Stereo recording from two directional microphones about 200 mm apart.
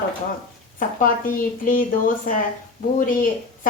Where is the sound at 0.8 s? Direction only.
45° left (ahead or behind).